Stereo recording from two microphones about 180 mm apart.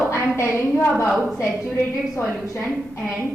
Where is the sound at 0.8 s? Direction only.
15° left (ahead or behind).